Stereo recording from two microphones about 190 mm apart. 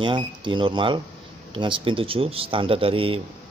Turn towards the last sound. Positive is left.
turn(degrees=-30)  # may be behind; listen again after turning